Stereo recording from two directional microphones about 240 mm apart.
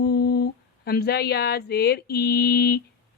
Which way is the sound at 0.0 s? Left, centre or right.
Left.